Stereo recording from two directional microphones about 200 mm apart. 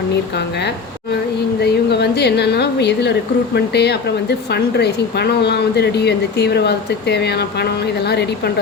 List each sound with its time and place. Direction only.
1.6 s a woman's voice: 55° left (ahead or behind)